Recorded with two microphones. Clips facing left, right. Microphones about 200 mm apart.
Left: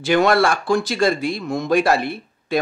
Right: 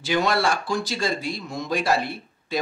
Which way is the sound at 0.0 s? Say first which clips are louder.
Left 6 dB; 55° left (ahead or behind).